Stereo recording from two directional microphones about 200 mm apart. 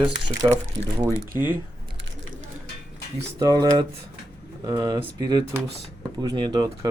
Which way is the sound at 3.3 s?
20° right (ahead or behind).